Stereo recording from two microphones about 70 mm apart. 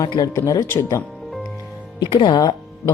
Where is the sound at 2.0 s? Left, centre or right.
Left.